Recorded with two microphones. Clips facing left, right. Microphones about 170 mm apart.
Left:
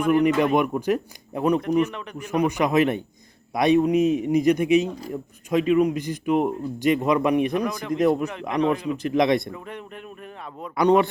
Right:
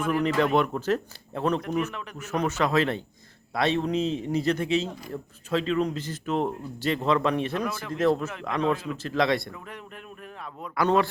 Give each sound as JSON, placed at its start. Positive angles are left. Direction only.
{"t": 0.2, "sound": "speech", "side_deg": 15}
{"t": 1.9, "sound": "speech", "side_deg": 0}
{"t": 2.1, "sound": "speech", "side_deg": 15}
{"t": 9.6, "sound": "speech", "side_deg": 0}
{"t": 10.8, "sound": "speech", "side_deg": 20}